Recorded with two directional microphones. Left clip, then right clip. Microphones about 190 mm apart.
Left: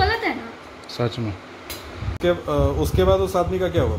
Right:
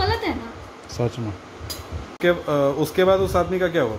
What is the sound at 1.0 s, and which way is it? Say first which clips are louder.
Speech: even; 10° left (ahead or behind).